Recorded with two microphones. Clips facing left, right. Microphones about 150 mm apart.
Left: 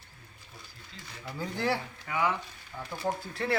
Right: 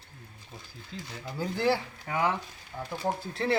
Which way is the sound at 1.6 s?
30° right (ahead or behind).